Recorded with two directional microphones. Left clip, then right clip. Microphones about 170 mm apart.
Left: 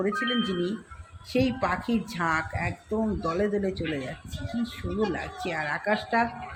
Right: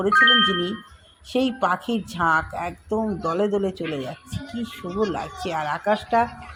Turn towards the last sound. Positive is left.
turn(degrees=-25)  # may be behind; listen again after turning